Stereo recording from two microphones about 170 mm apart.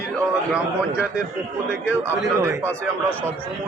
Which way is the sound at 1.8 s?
15° right (ahead or behind).